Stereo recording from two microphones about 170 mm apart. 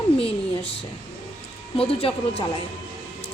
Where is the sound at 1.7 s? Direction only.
35° left (ahead or behind).